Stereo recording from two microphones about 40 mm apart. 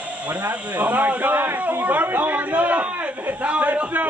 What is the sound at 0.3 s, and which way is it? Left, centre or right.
A man's voice, right.